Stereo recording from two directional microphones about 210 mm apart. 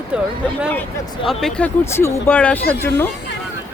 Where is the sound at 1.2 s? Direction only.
Centre (ahead or behind).